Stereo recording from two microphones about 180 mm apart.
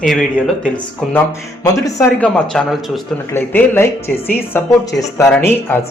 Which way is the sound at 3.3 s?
15° left (ahead or behind).